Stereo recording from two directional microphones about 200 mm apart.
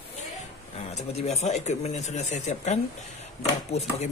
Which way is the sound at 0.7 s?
35° left (ahead or behind).